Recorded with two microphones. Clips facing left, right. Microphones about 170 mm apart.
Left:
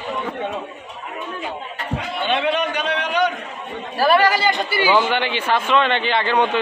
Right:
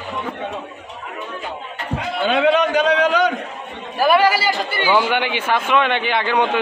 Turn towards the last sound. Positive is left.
turn(degrees=-10)  # may be behind; listen again after turning